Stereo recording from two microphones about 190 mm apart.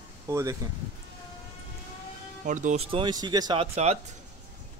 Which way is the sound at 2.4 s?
40° right (ahead or behind).